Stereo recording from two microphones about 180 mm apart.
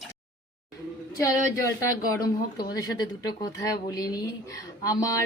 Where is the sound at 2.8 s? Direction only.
20° left (ahead or behind).